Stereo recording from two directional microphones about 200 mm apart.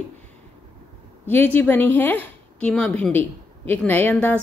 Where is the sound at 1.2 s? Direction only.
10° left (ahead or behind).